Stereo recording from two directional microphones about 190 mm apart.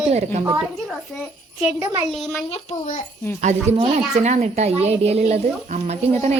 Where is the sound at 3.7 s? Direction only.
35° right (ahead or behind).